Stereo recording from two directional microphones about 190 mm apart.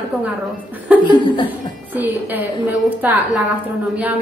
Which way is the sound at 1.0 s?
25° left (ahead or behind).